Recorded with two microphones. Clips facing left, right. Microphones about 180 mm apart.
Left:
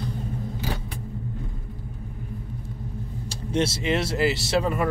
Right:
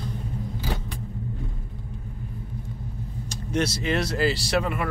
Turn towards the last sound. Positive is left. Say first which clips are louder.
# left 1 dB
turn(degrees=25)  # may be behind; listen again after turning